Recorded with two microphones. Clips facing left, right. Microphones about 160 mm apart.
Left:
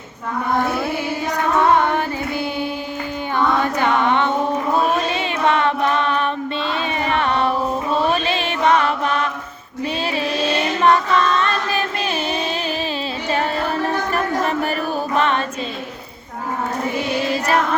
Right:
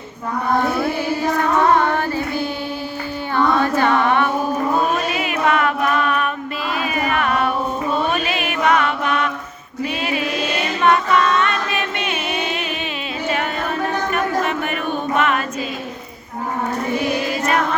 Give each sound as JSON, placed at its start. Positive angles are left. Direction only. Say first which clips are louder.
{"t": 1.8, "sound": "carnatic music", "louder": "right 1 dB", "side_deg": 15}
{"t": 3.3, "sound": "female singing", "louder": "right 2 dB", "side_deg": 15}
{"t": 4.9, "sound": "music", "louder": "even", "side_deg": 30}
{"t": 10.1, "sound": "choir", "louder": "left 3 dB", "side_deg": 30}
{"t": 14.1, "sound": "a sound", "louder": "even", "side_deg": 35}
{"t": 15.1, "sound": "music", "louder": "even", "side_deg": 30}
{"t": 17.2, "sound": "music", "louder": "left 1 dB", "side_deg": 30}